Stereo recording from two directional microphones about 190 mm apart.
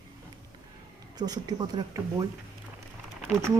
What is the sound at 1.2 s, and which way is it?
Speech, 20° right (ahead or behind).